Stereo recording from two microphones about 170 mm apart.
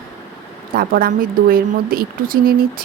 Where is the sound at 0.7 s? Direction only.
55° right (ahead or behind).